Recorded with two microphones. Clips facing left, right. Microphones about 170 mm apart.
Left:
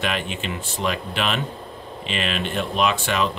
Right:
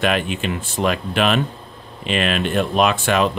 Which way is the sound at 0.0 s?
55° right (ahead or behind).